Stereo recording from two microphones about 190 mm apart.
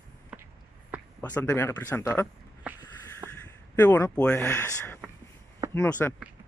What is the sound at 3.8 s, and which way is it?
Speech, 10° left (ahead or behind).